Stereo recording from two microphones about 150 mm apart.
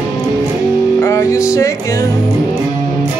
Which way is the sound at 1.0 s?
20° left (ahead or behind).